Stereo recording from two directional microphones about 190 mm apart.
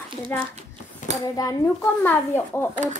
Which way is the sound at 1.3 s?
15° left (ahead or behind).